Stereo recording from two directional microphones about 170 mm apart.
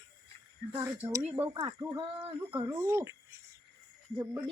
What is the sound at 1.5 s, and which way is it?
Speech, 25° right (ahead or behind).